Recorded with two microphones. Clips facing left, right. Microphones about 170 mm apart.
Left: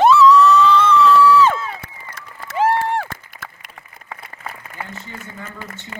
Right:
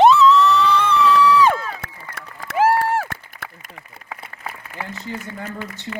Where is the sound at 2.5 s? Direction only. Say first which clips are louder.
Right 1 dB; 5° right (ahead or behind).